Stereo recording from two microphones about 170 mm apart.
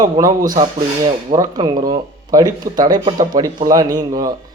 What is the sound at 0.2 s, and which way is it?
Speech, 25° right (ahead or behind).